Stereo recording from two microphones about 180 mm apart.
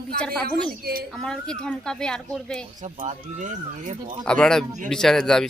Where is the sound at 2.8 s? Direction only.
40° right (ahead or behind).